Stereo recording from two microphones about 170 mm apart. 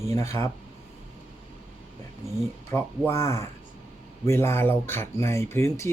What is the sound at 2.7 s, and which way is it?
Speech, 15° left (ahead or behind).